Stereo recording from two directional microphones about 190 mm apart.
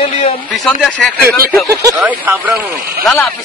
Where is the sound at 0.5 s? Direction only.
Centre (ahead or behind).